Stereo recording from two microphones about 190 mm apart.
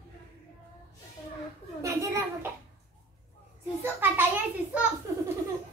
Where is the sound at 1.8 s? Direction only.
15° right (ahead or behind).